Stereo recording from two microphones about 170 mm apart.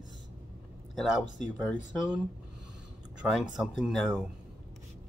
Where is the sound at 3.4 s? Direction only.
Centre (ahead or behind).